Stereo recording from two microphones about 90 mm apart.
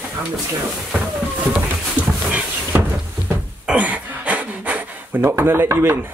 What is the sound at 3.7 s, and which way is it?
Cough, 15° right (ahead or behind).